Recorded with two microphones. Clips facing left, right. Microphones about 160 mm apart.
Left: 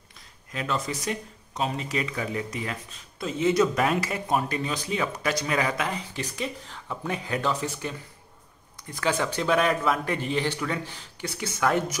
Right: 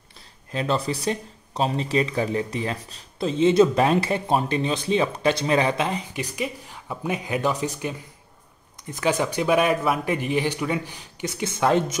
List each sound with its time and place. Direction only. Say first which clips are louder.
0.5 s speech: right 5 dB; 30° right (ahead or behind); by 7.9 s 15° right (ahead or behind)
8.9 s speech: right 3 dB; 15° right (ahead or behind)